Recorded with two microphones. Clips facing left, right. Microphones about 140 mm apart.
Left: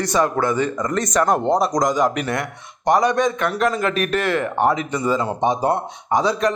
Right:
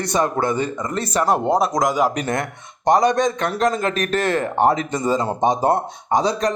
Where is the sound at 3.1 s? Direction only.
40° right (ahead or behind).